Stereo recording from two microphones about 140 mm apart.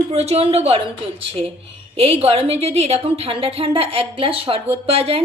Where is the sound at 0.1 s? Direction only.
50° right (ahead or behind).